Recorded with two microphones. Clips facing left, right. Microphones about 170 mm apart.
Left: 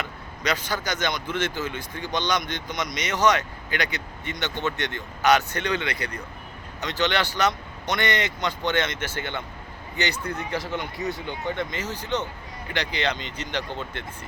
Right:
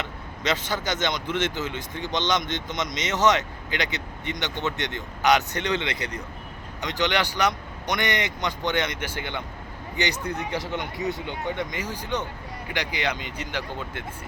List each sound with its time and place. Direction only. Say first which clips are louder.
0.0 s speech: even; 25° right (ahead or behind)